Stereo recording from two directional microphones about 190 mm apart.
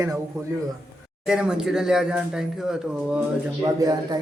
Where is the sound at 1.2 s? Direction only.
5° right (ahead or behind).